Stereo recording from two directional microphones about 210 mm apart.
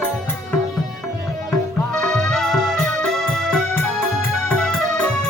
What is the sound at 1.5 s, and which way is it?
Music, 5° left (ahead or behind).